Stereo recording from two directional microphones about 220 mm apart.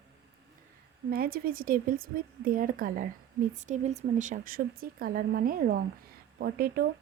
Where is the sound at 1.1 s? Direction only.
45° right (ahead or behind).